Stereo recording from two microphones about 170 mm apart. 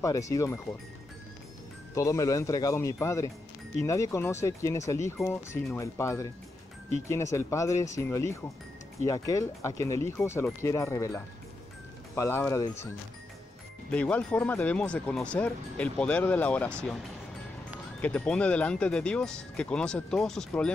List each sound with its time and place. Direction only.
0.0 s speech: 20° left (ahead or behind)
2.0 s speech: 20° left (ahead or behind)
12.2 s speech: 15° left (ahead or behind)
18.0 s speech: 10° left (ahead or behind)